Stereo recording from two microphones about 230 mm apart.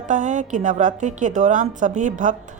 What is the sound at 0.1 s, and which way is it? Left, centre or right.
Speech, right.